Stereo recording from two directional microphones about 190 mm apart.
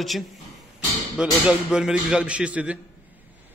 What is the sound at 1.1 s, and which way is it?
A man's voice, 5° right (ahead or behind).